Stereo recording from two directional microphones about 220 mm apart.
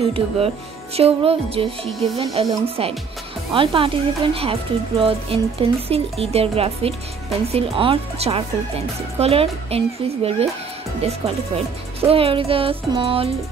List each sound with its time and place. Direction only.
0.0 s a woman's voice: 25° right (ahead or behind)